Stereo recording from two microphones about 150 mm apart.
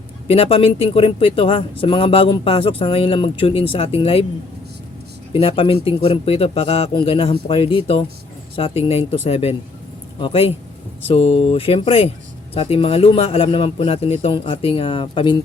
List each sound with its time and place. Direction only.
0.3 s speech: 40° left (ahead or behind)
5.3 s speech: 40° left (ahead or behind)